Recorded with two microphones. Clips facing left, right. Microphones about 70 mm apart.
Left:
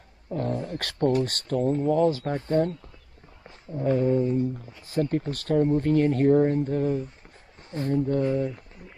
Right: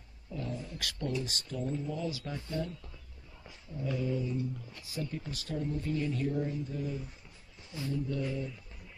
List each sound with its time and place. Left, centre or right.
0.3 s speech: left
3.4 s a sound: left
4.8 s speech: left